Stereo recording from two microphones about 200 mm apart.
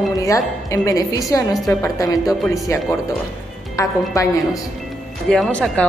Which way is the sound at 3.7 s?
15° left (ahead or behind).